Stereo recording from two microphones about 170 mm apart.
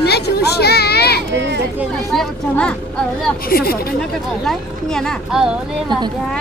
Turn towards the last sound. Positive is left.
turn(degrees=0)  # may be behind; listen again after turning